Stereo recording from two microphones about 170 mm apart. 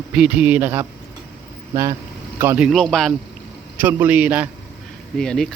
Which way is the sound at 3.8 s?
10° right (ahead or behind).